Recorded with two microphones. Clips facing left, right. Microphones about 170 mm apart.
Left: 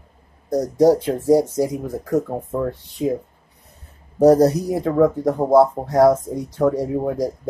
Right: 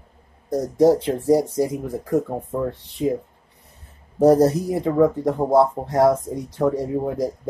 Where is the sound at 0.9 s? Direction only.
Centre (ahead or behind).